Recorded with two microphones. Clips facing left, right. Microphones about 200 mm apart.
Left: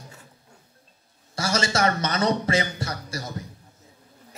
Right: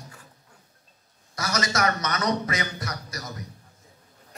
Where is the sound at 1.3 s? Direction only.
30° left (ahead or behind).